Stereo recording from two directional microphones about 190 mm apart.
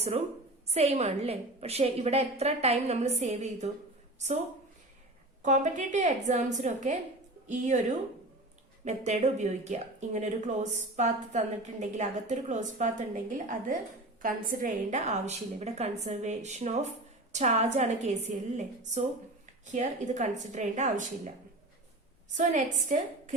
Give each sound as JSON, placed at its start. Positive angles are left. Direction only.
{"t": 0.7, "sound": "speech", "side_deg": -35}
{"t": 5.4, "sound": "a woman's voice", "side_deg": -40}
{"t": 14.2, "sound": "speech", "side_deg": -45}
{"t": 22.4, "sound": "speech", "side_deg": -40}